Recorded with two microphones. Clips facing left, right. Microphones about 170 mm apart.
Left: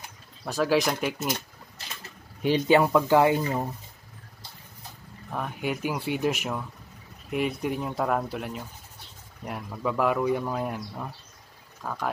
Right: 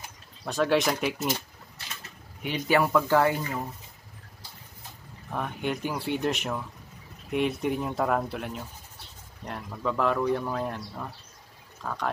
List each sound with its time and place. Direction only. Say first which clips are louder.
0.5 s speech: even; centre (ahead or behind)
2.4 s speech: left 4 dB; 25° left (ahead or behind)
5.3 s speech: even; 5° left (ahead or behind)